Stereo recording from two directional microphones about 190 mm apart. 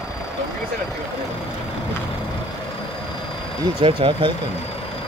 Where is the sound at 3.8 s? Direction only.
25° right (ahead or behind).